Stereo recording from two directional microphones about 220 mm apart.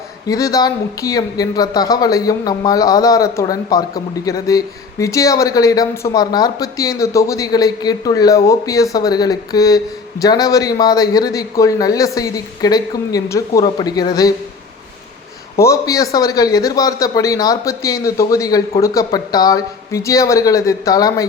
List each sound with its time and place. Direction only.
0.3 s speech: 15° left (ahead or behind)
15.5 s speech: 15° left (ahead or behind)